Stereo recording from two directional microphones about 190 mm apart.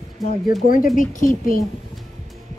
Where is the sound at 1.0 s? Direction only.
45° left (ahead or behind).